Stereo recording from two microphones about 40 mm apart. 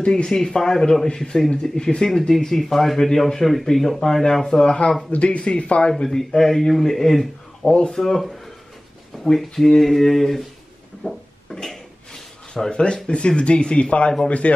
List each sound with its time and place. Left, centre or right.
0.0 s a man's voice: left
5.1 s speech: left
6.0 s a man's voice: centre
7.6 s speech: left
7.9 s a man's voice: centre
11.1 s a sound: centre
13.1 s speech: left